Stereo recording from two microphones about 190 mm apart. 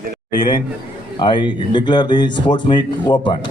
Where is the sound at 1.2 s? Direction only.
25° left (ahead or behind).